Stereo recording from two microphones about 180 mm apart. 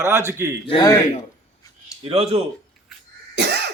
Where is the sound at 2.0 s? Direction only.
35° right (ahead or behind).